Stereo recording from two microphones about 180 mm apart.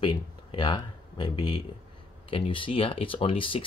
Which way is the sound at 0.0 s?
30° left (ahead or behind).